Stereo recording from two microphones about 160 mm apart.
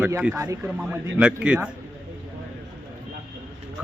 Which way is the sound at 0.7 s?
5° right (ahead or behind).